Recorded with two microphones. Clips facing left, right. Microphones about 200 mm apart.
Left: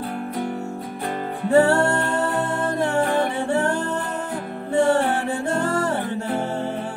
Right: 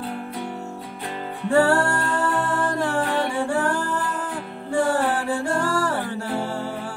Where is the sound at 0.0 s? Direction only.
45° left (ahead or behind).